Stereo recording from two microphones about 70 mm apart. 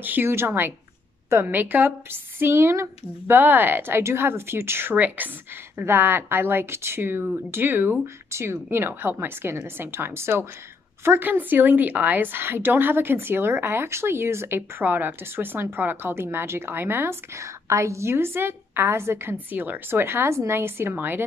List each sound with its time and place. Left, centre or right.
0.0 s a woman's voice: right
3.3 s a woman's voice: right
4.9 s a woman's voice: right
19.3 s a woman's voice: right